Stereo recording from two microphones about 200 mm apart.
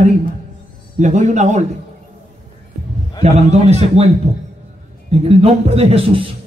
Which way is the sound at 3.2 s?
35° right (ahead or behind).